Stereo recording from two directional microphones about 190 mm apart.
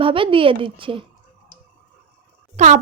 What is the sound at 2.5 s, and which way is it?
Speech, 40° right (ahead or behind).